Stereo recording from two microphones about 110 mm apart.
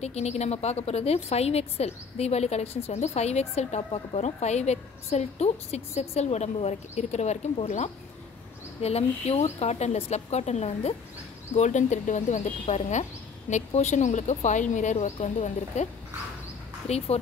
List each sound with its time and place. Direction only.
0.0 s a woman's voice: 85° left
8.8 s speech: 70° left (ahead or behind)
11.5 s speech: 90° left
16.8 s speech: 70° left (ahead or behind)